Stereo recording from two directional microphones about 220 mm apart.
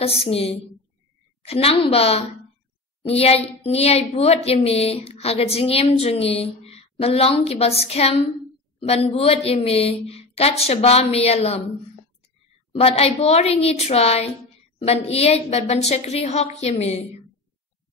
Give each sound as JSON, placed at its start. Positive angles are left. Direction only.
{"t": 0.0, "sound": "a woman's voice", "side_deg": 25}
{"t": 12.7, "sound": "a woman's voice", "side_deg": 25}